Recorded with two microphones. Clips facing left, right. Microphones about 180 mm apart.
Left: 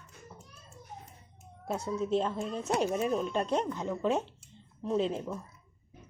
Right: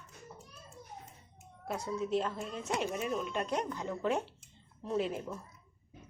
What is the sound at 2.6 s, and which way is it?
Speech, 40° left (ahead or behind).